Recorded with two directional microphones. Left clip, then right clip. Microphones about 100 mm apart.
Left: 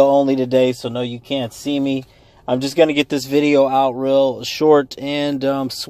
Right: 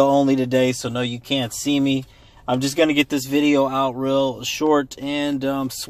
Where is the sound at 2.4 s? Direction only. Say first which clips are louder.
Left 4 dB; 35° left (ahead or behind).